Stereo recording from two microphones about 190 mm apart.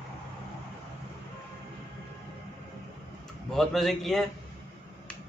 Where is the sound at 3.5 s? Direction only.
Centre (ahead or behind).